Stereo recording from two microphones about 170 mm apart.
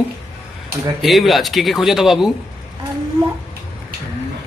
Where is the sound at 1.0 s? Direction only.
Centre (ahead or behind).